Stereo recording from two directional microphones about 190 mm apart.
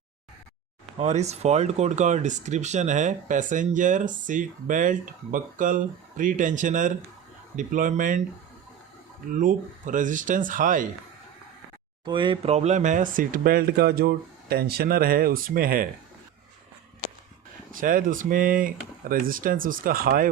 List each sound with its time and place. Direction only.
0.9 s speech: 35° right (ahead or behind)
9.3 s speech: 40° right (ahead or behind)
12.0 s speech: 25° right (ahead or behind); by 15.9 s 50° right (ahead or behind)
17.7 s speech: 45° right (ahead or behind)